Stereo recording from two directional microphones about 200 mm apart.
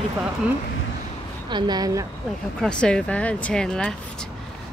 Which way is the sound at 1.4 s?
20° right (ahead or behind).